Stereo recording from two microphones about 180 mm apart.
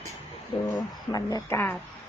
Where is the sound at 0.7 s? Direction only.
20° left (ahead or behind).